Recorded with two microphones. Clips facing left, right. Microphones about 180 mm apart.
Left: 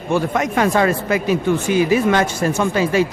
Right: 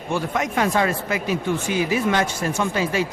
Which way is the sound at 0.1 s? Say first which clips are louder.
Left 5 dB; 50° left (ahead or behind).